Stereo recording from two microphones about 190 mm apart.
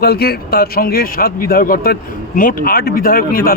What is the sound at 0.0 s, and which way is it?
A man's voice, 55° left (ahead or behind).